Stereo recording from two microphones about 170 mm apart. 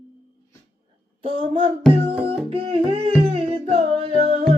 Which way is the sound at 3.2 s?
35° right (ahead or behind).